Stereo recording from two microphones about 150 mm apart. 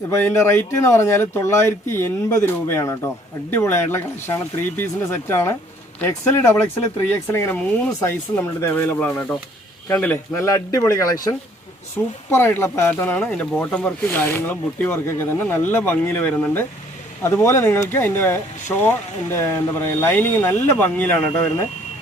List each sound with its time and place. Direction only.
0.1 s a man's voice: 15° left (ahead or behind)
12.3 s speech: 15° left (ahead or behind)